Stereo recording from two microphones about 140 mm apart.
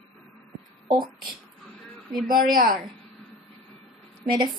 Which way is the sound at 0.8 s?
35° right (ahead or behind).